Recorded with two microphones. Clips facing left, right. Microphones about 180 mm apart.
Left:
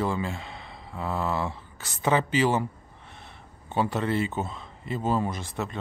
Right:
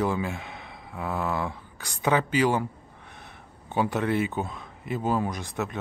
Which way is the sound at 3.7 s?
15° right (ahead or behind).